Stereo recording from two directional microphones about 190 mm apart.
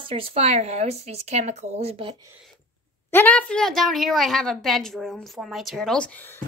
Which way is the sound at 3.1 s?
10° left (ahead or behind).